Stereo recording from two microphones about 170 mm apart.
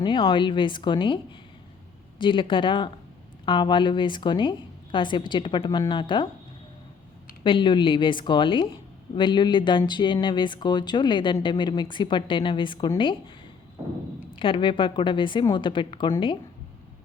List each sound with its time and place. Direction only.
0.0 s speech: 30° left (ahead or behind)
7.4 s speech: 30° left (ahead or behind)
14.3 s speech: 30° left (ahead or behind)